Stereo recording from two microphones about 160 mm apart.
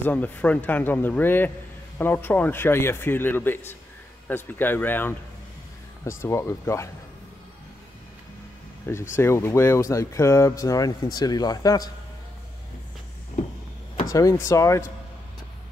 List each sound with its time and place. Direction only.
0.0 s speech: 10° left (ahead or behind)
9.1 s speech: 15° left (ahead or behind)
14.0 s speech: 20° left (ahead or behind)